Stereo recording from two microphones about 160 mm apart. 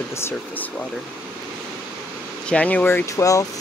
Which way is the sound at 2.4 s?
5° left (ahead or behind).